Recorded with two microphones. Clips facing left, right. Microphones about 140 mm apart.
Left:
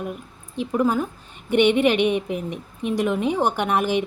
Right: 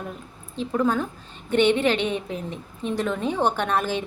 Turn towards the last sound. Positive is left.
turn(degrees=15)  # may be behind; listen again after turning